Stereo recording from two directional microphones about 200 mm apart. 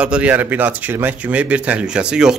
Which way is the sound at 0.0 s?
5° right (ahead or behind).